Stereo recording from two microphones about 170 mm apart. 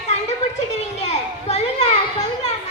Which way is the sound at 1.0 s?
40° left (ahead or behind).